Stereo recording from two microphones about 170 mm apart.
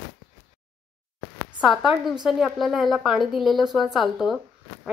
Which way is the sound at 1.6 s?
Centre (ahead or behind).